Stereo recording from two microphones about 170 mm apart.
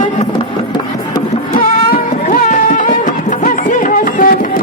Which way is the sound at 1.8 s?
50° left (ahead or behind).